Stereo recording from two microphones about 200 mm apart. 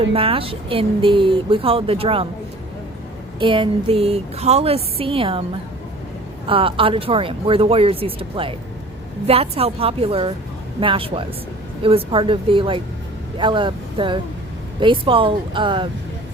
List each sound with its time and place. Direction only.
0.1 s speech: 30° right (ahead or behind)
3.4 s speech: 25° right (ahead or behind)
6.5 s speech: 25° right (ahead or behind)